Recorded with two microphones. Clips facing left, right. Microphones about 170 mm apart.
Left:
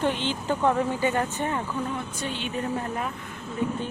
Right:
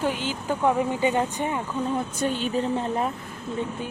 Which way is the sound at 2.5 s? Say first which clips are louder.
Right 4 dB; 25° right (ahead or behind).